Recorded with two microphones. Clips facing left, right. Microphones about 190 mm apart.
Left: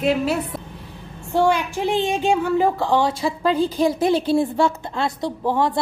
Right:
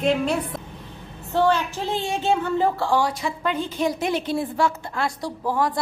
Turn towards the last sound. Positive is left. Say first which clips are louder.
# left 3 dB
turn(degrees=25)  # may be behind; listen again after turning